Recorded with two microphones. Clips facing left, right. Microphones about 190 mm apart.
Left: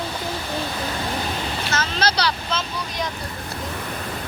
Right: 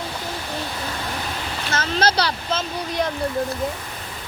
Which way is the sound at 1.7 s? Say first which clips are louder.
Right 4 dB; 55° right (ahead or behind).